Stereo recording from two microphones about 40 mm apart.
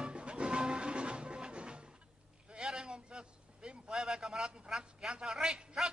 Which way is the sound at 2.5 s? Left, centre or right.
Centre.